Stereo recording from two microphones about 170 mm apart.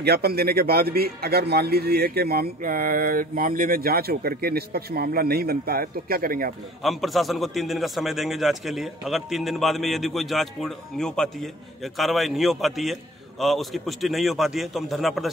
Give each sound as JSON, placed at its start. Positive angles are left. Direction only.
{"t": 0.0, "sound": "a man's voice", "side_deg": -70}
{"t": 6.8, "sound": "a man's voice", "side_deg": 0}